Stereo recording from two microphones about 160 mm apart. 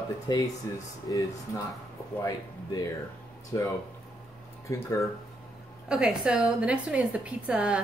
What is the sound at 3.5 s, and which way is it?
Speech, 25° left (ahead or behind).